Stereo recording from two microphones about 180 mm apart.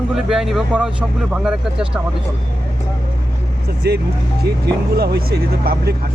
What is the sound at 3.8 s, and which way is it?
Speech, 65° right (ahead or behind).